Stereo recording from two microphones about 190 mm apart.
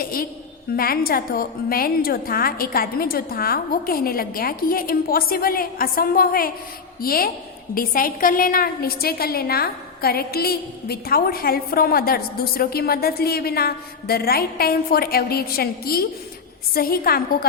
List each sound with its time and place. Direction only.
0.0 s a woman's voice: 50° left (ahead or behind)